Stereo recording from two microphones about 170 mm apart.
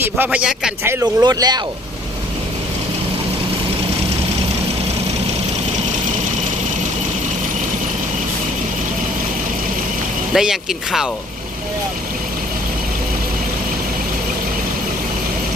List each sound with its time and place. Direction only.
0.0 s a man's voice: 10° right (ahead or behind)
0.9 s speech: 15° right (ahead or behind)
10.3 s speech: centre (ahead or behind)